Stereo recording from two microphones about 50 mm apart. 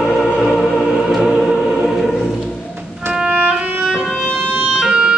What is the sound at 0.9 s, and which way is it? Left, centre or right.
Music, centre.